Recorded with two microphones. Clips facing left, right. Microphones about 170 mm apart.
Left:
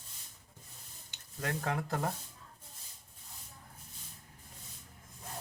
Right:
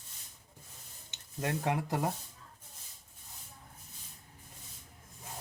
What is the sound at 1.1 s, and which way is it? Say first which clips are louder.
Speech: right 3 dB; 20° right (ahead or behind).